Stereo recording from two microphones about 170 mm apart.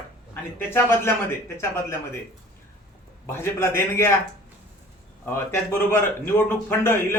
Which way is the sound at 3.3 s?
15° left (ahead or behind).